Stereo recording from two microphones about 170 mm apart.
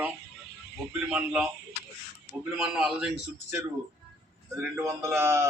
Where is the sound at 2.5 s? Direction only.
5° right (ahead or behind).